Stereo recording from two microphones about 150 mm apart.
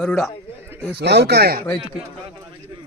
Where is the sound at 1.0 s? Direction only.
90° right.